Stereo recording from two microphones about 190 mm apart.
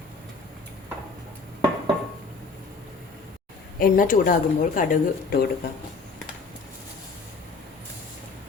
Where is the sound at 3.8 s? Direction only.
50° left (ahead or behind).